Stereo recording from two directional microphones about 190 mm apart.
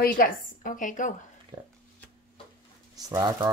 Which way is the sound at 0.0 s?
50° left (ahead or behind).